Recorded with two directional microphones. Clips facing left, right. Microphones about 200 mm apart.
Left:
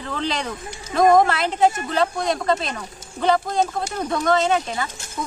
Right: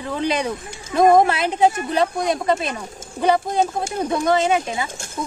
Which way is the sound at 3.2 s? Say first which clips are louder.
Right 1 dB; 15° right (ahead or behind).